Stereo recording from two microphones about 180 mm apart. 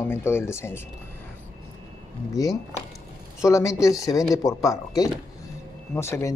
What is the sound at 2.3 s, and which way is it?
Speech, 20° left (ahead or behind).